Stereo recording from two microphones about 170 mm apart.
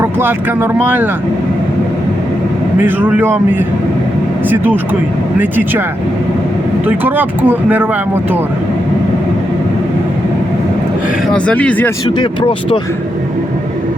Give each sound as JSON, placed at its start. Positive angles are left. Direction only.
{"t": 0.0, "sound": "speech", "side_deg": -10}
{"t": 2.8, "sound": "speech", "side_deg": -10}
{"t": 6.8, "sound": "speech", "side_deg": -10}
{"t": 11.3, "sound": "speech", "side_deg": 5}
{"t": 12.1, "sound": "speech", "side_deg": 30}